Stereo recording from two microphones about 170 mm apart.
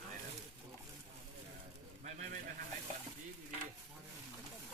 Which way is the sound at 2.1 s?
45° right (ahead or behind).